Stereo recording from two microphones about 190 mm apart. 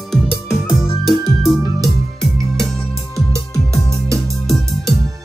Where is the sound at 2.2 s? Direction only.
Centre (ahead or behind).